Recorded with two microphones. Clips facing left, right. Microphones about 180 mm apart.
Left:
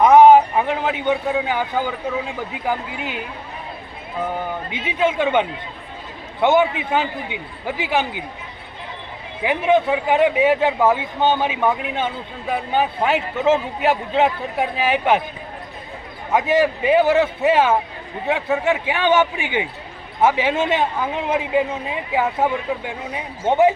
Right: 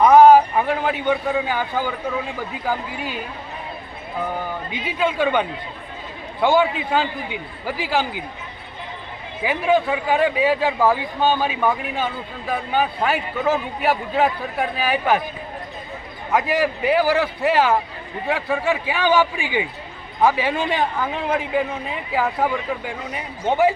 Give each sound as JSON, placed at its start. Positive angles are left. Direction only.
{"t": 0.0, "sound": "a sound", "side_deg": 20}
{"t": 1.5, "sound": "a man's voice", "side_deg": 20}
{"t": 4.7, "sound": "a man's voice", "side_deg": 25}
{"t": 9.6, "sound": "a man's voice", "side_deg": 20}
{"t": 16.3, "sound": "a man's voice", "side_deg": 20}